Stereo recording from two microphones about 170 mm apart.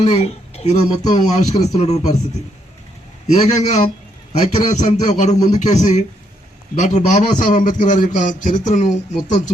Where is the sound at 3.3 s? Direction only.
40° left (ahead or behind).